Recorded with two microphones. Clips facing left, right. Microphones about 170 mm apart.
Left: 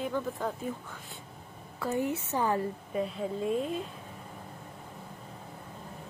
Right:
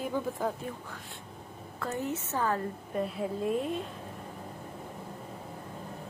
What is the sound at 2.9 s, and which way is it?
Speech, centre (ahead or behind).